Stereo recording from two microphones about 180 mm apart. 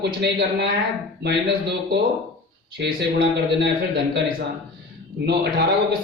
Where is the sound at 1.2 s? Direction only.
65° right (ahead or behind).